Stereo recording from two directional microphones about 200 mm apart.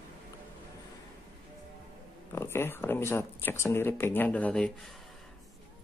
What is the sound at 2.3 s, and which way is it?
Speech, 10° left (ahead or behind).